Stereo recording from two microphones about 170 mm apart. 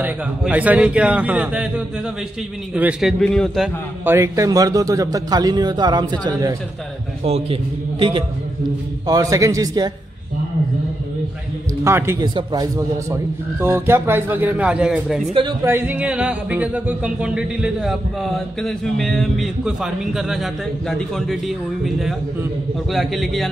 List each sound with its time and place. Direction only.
0.0 s speech: 10° right (ahead or behind)
2.7 s a man's voice: 5° right (ahead or behind)
4.0 s a man's voice: 15° right (ahead or behind)
7.2 s a man's voice: 35° right (ahead or behind)
9.0 s a man's voice: 20° right (ahead or behind)
11.8 s a man's voice: 15° right (ahead or behind); by 23.5 s centre (ahead or behind)